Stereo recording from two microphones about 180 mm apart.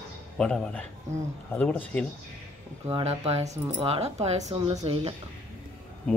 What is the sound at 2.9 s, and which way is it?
Speech, 35° right (ahead or behind).